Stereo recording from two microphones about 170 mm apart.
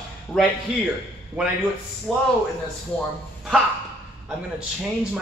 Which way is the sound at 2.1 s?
Centre (ahead or behind).